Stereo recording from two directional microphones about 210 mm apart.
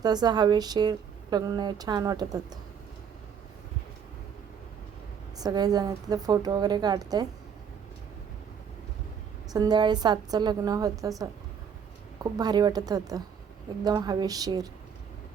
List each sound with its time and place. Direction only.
0.0 s speech: 20° right (ahead or behind)
5.4 s a woman's voice: 20° right (ahead or behind)
9.5 s speech: 20° right (ahead or behind)
12.2 s a woman's voice: 20° right (ahead or behind)